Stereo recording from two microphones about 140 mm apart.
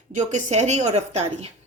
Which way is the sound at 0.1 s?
60° right (ahead or behind).